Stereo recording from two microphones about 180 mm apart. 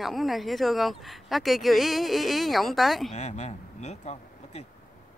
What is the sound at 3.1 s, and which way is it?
Speech, 40° left (ahead or behind).